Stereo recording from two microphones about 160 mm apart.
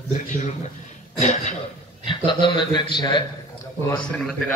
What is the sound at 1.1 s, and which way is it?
Speech, 45° left (ahead or behind).